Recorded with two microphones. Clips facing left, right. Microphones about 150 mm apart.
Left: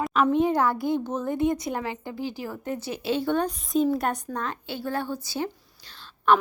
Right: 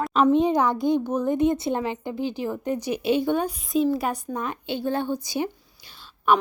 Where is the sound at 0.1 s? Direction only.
25° right (ahead or behind).